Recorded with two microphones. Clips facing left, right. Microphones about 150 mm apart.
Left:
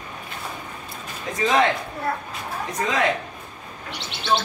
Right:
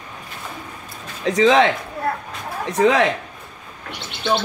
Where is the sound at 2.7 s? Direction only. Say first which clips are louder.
Right 11 dB; 75° right (ahead or behind).